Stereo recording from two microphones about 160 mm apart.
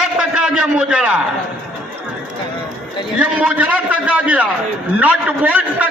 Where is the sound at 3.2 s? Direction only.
10° right (ahead or behind).